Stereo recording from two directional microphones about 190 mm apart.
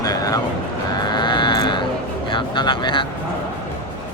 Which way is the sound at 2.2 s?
25° left (ahead or behind).